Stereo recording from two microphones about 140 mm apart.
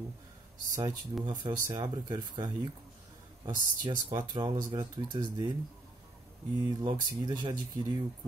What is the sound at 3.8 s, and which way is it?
Speech, 30° right (ahead or behind).